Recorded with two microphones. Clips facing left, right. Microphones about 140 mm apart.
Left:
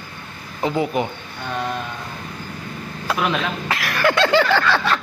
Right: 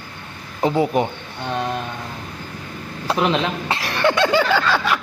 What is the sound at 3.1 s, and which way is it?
Speech, 25° right (ahead or behind).